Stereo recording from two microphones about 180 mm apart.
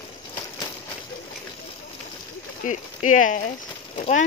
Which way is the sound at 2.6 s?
45° left (ahead or behind).